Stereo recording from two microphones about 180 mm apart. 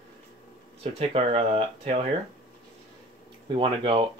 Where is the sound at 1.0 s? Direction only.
30° right (ahead or behind).